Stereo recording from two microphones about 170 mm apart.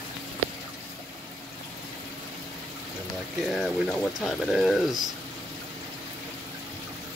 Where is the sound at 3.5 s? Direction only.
Centre (ahead or behind).